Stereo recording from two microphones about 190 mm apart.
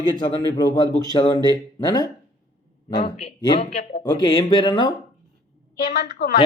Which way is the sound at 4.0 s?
25° left (ahead or behind).